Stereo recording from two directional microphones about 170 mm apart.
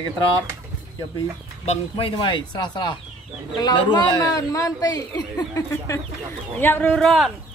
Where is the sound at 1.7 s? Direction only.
35° left (ahead or behind); by 7.3 s centre (ahead or behind).